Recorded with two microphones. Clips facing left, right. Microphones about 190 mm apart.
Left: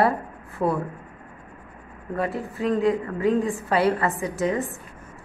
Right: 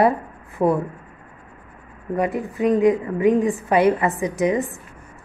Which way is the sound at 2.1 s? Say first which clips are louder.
Right 4 dB; 15° right (ahead or behind).